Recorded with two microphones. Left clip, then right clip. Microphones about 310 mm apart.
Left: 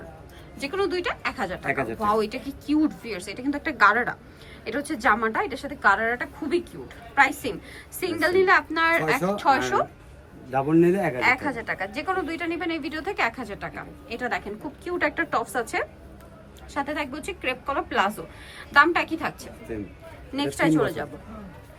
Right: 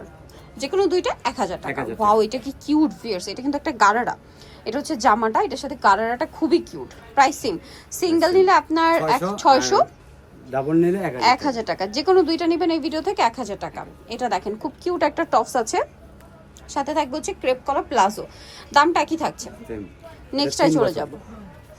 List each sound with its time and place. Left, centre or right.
0.6 s speech: centre
1.6 s a man's voice: centre
2.0 s speech: centre
9.0 s a man's voice: centre
9.4 s speech: centre
10.5 s a man's voice: centre
11.2 s speech: centre
16.7 s speech: centre